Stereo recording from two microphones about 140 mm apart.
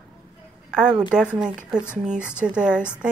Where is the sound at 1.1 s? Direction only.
5° right (ahead or behind).